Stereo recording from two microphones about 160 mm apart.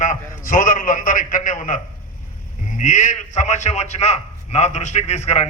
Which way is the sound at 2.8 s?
50° left (ahead or behind).